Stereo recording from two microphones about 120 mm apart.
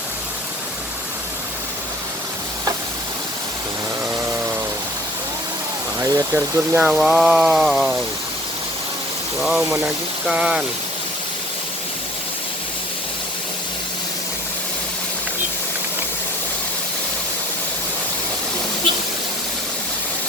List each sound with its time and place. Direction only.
6.0 s speech: 25° right (ahead or behind)
6.6 s speech: 10° right (ahead or behind)
9.4 s speech: 5° right (ahead or behind)